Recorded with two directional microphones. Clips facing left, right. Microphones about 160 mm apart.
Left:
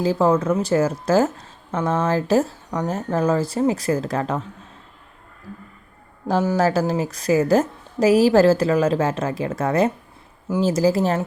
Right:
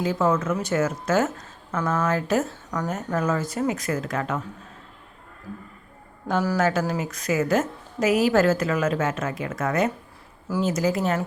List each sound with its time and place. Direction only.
0.0 s a woman's voice: 35° left (ahead or behind)
6.2 s a woman's voice: 30° left (ahead or behind)